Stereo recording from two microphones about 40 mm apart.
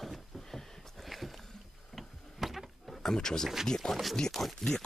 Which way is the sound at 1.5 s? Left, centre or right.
Centre.